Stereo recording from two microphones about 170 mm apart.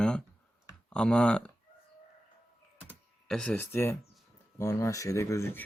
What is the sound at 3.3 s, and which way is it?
Speech, 5° left (ahead or behind).